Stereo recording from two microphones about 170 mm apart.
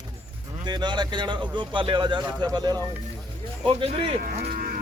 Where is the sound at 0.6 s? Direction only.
25° right (ahead or behind).